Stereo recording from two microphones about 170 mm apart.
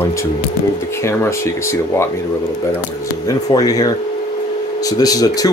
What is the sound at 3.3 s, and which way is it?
Speech, 20° left (ahead or behind).